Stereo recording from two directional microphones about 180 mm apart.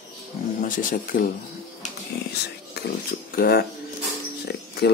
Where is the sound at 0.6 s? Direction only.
50° left (ahead or behind).